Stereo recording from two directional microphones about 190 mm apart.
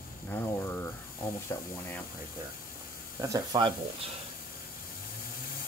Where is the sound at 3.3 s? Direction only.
20° right (ahead or behind).